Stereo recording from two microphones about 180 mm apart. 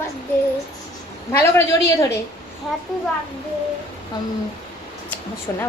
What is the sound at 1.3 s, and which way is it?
Speech, 15° left (ahead or behind).